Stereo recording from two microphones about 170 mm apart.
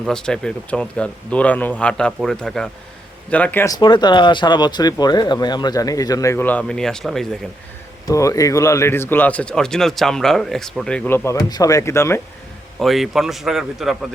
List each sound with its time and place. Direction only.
0.0 s speech: 5° left (ahead or behind)
3.8 s speech: 25° left (ahead or behind); by 7.3 s centre (ahead or behind)
8.0 s speech: 20° left (ahead or behind)
12.8 s speech: centre (ahead or behind)